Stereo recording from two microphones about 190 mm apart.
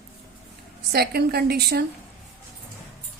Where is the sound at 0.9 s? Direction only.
55° right (ahead or behind).